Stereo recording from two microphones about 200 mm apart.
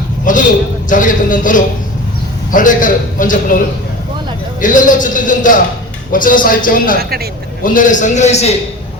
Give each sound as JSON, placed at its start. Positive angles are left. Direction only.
{"t": 0.3, "sound": "a man's voice", "side_deg": 40}
{"t": 4.6, "sound": "a man's voice", "side_deg": 40}
{"t": 7.0, "sound": "a man's voice", "side_deg": -50}
{"t": 7.6, "sound": "a man's voice", "side_deg": 40}